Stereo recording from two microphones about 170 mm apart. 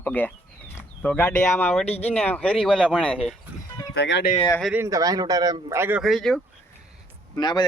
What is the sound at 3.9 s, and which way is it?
Speech, 85° left.